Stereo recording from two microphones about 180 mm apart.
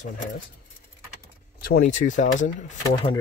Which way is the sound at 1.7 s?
50° left (ahead or behind).